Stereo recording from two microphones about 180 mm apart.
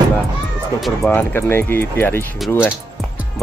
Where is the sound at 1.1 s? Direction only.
10° left (ahead or behind).